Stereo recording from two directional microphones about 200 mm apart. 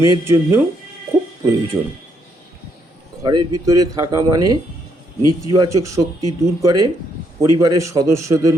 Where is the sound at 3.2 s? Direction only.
20° right (ahead or behind).